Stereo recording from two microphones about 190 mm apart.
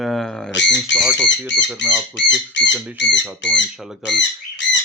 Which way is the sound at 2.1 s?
70° left (ahead or behind).